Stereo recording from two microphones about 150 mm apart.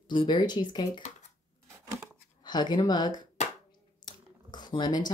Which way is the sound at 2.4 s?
30° left (ahead or behind).